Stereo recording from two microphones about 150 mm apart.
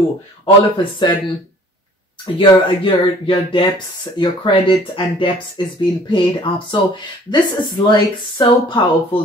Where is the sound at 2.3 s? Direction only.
35° left (ahead or behind).